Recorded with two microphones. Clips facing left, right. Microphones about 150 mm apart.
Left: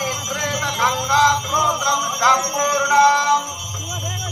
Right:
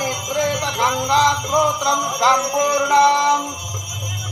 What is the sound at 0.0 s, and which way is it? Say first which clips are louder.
Music: right 5 dB; 30° right (ahead or behind).